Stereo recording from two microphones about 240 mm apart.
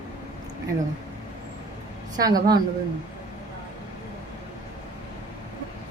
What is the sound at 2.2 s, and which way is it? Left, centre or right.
Speech, centre.